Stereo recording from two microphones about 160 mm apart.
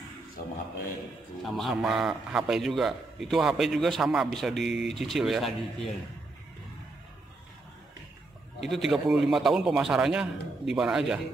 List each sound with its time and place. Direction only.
0.4 s a sound: 60° left (ahead or behind)
1.4 s a man's voice: centre (ahead or behind)
8.6 s a man's voice: centre (ahead or behind)